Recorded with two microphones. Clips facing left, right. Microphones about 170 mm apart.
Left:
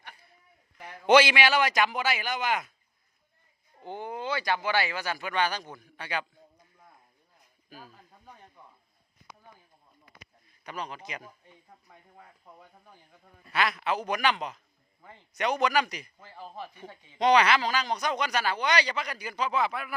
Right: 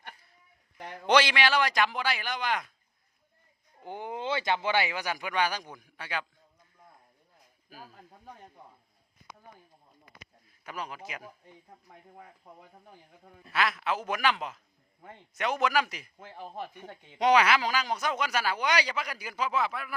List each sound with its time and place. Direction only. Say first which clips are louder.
1.0 s a man's voice: left 4 dB; 5° left (ahead or behind)
3.8 s speech: left 1 dB; 15° right (ahead or behind)
10.6 s speech: left 1 dB; 5° right (ahead or behind)
13.5 s a man's voice: left 1 dB; centre (ahead or behind)
16.9 s speech: right 3 dB; 60° right (ahead or behind)
17.2 s speech: left 1 dB; 10° right (ahead or behind)